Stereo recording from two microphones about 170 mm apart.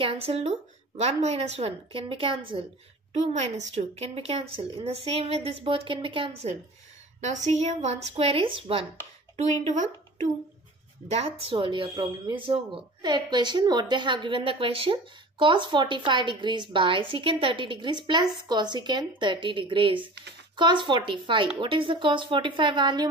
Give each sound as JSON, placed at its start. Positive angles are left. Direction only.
{"t": 0.0, "sound": "speech", "side_deg": -35}
{"t": 7.2, "sound": "speech", "side_deg": -40}
{"t": 9.4, "sound": "speech", "side_deg": -45}